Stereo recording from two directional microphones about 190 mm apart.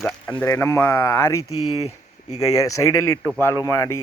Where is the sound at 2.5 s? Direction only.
20° left (ahead or behind).